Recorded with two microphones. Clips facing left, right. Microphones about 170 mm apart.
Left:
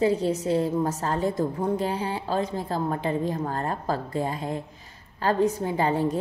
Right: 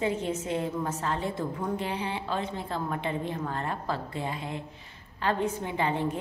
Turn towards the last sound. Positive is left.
turn(degrees=40)  # may be behind; listen again after turning